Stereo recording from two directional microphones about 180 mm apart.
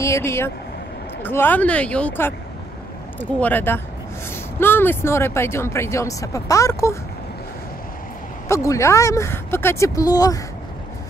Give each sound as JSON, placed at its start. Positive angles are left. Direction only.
{"t": 0.0, "sound": "speech", "side_deg": 15}
{"t": 8.5, "sound": "speech", "side_deg": 15}